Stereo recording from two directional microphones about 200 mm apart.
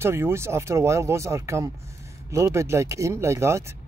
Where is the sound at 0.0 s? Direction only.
15° right (ahead or behind).